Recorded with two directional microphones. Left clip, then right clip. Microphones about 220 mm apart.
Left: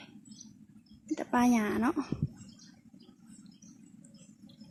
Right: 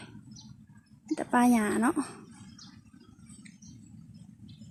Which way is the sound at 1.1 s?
Centre (ahead or behind).